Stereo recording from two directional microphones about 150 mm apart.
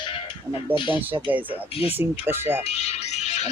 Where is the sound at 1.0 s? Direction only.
15° right (ahead or behind).